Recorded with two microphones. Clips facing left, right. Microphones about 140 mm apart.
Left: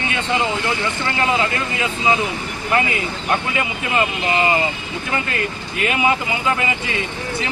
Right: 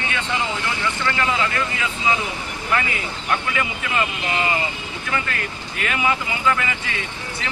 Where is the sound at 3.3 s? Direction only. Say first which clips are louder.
Left 2 dB; 25° left (ahead or behind).